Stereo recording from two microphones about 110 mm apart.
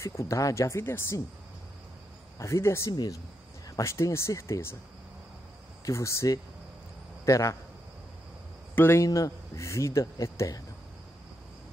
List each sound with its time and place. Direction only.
0.0 s speech: 25° left (ahead or behind)
2.3 s speech: 25° left (ahead or behind)
2.9 s a man's voice: 35° left (ahead or behind)
5.9 s a man's voice: 30° left (ahead or behind)
8.7 s speech: 25° left (ahead or behind)